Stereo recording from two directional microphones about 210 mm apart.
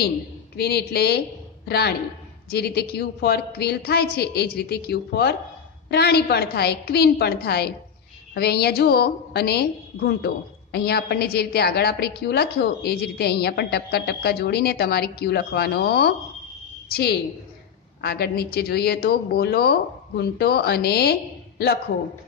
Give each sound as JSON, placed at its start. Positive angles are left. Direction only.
{"t": 0.6, "sound": "a woman's voice", "side_deg": 50}